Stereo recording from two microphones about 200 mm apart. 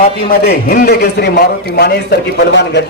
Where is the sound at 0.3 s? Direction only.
50° left (ahead or behind).